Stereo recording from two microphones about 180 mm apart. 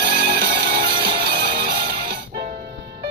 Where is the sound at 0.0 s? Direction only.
65° right (ahead or behind).